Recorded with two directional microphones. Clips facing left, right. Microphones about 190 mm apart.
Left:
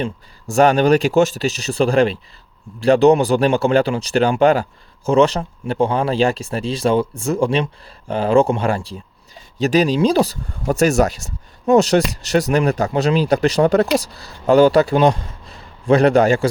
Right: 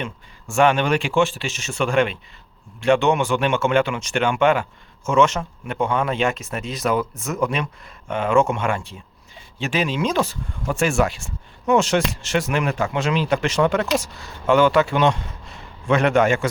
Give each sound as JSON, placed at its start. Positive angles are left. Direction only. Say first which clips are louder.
{"t": 0.0, "sound": "speech", "louder": "left 6 dB", "side_deg": 40}